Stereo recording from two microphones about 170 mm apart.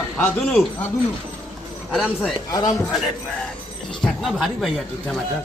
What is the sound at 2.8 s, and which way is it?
A man's voice, centre (ahead or behind).